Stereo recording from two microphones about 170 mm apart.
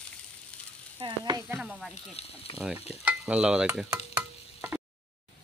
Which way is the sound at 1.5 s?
Centre (ahead or behind).